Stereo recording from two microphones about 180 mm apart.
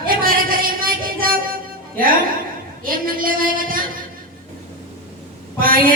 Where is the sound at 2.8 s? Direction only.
50° right (ahead or behind).